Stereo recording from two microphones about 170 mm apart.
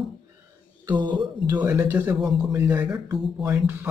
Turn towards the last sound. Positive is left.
turn(degrees=-20)  # may be behind; listen again after turning